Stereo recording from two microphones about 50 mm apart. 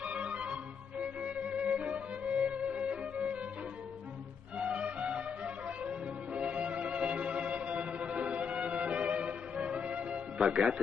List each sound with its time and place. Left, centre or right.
0.0 s music: right
4.6 s music: right